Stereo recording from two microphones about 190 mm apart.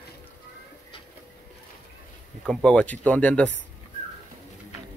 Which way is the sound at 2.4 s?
5° left (ahead or behind).